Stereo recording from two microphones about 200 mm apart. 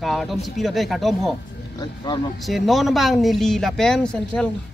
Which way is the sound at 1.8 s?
20° left (ahead or behind).